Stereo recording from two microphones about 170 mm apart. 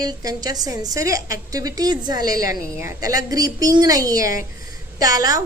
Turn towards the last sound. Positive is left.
turn(degrees=-20)  # may be behind; listen again after turning